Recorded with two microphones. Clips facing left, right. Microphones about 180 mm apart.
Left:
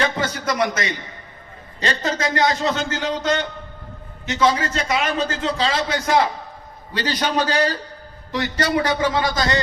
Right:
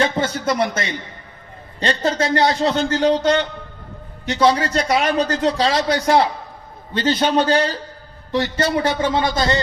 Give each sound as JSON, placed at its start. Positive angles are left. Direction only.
{"t": 0.0, "sound": "a man's voice", "side_deg": -30}